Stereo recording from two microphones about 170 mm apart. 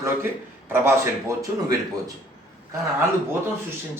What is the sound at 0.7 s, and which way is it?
Speech, 15° right (ahead or behind).